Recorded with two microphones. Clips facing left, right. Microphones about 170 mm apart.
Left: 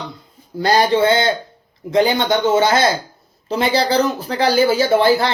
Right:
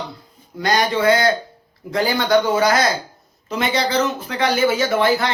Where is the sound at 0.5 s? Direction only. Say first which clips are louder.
Left 4 dB; 30° left (ahead or behind).